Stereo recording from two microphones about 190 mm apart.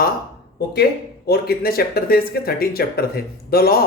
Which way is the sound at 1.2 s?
55° left (ahead or behind).